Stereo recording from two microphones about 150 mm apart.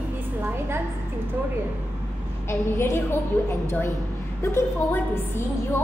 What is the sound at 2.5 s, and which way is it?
A woman's voice, 15° left (ahead or behind).